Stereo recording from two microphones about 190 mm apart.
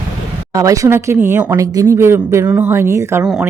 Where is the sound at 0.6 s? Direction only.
15° right (ahead or behind).